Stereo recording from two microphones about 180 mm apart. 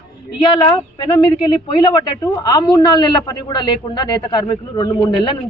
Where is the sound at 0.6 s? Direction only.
25° left (ahead or behind).